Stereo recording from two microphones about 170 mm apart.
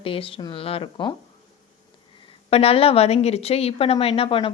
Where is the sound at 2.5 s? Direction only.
35° left (ahead or behind).